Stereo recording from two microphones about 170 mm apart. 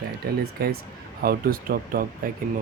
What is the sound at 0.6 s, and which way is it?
Speech, 70° right (ahead or behind).